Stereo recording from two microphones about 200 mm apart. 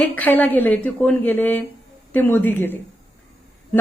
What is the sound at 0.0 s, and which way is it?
A woman's voice, 10° left (ahead or behind).